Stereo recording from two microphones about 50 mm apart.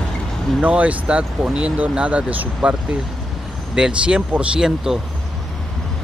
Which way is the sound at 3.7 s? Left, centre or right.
Centre.